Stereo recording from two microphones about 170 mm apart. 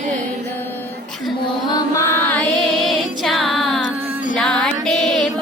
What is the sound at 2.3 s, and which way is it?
Music, centre (ahead or behind).